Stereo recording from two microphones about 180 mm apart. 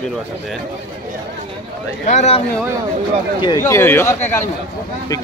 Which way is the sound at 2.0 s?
40° left (ahead or behind).